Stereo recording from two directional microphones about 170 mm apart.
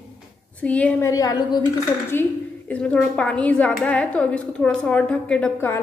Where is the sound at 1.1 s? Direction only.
20° left (ahead or behind).